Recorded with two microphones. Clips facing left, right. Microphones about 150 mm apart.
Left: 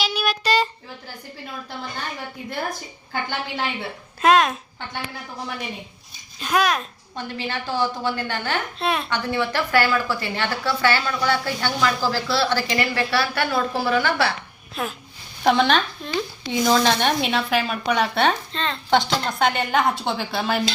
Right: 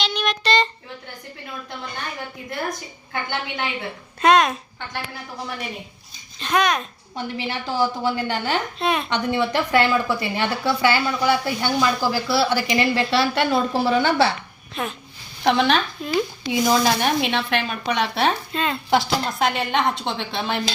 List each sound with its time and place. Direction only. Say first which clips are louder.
0.0 s child singing: even; 5° left (ahead or behind)
3.1 s speech: even; centre (ahead or behind)
6.4 s speech: even; 5° left (ahead or behind)
7.2 s a woman's voice: right 1 dB; 15° right (ahead or behind)
8.8 s speech: right 1 dB; centre (ahead or behind)
9.0 s a woman's voice: right 2 dB; 20° right (ahead or behind)
14.8 s speech: even; centre (ahead or behind)
16.5 s speech: left 1 dB; 10° right (ahead or behind); by 20.7 s 5° left (ahead or behind)